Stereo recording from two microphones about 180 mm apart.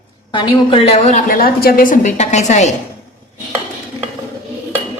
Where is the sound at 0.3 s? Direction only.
25° left (ahead or behind).